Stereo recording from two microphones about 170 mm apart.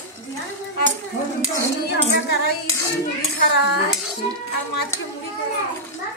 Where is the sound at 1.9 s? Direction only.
75° left (ahead or behind).